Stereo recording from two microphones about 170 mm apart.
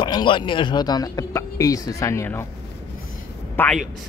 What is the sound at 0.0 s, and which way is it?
Speech, 25° left (ahead or behind).